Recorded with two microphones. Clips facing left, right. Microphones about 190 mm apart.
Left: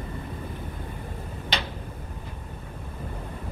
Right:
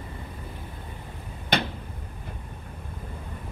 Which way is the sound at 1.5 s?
55° right (ahead or behind).